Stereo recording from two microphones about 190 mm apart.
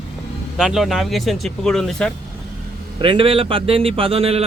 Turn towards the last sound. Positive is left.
turn(degrees=-30)  # may be behind; listen again after turning